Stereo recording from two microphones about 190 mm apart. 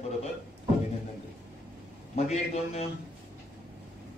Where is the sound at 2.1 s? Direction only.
35° left (ahead or behind).